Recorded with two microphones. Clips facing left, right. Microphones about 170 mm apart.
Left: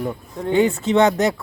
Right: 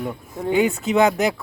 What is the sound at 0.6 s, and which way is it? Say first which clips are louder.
Speech: left 1 dB; centre (ahead or behind).